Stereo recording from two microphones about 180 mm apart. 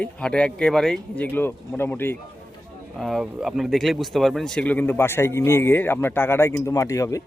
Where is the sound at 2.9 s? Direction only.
Centre (ahead or behind); by 7.2 s 15° left (ahead or behind).